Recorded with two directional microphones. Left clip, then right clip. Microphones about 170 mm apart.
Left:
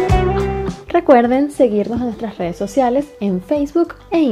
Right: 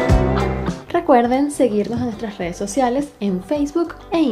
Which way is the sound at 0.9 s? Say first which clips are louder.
Left 3 dB; 25° left (ahead or behind).